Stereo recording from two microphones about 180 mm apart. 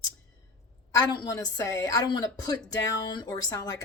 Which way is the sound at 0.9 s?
20° left (ahead or behind).